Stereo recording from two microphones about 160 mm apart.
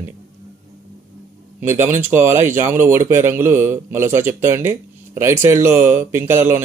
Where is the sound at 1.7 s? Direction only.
15° right (ahead or behind).